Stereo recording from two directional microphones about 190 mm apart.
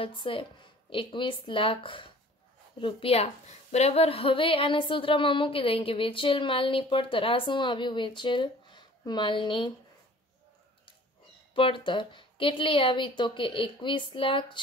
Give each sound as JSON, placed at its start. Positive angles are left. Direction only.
{"t": 0.0, "sound": "a woman's voice", "side_deg": 25}
{"t": 11.5, "sound": "a woman's voice", "side_deg": 25}